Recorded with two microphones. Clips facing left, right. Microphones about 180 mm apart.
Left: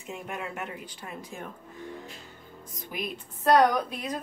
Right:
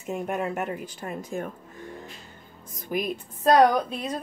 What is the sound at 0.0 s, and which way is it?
Speech, 45° right (ahead or behind).